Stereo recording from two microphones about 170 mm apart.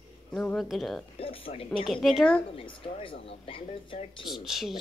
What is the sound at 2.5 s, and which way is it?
Speech, 35° left (ahead or behind).